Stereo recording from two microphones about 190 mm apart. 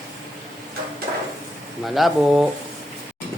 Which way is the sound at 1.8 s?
Centre (ahead or behind).